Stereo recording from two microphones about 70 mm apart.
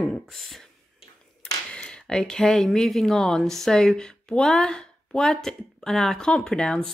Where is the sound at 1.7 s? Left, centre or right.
Centre.